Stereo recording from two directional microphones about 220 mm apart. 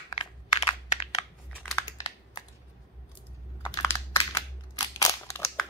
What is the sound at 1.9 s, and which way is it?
Computer keyboard, 15° left (ahead or behind).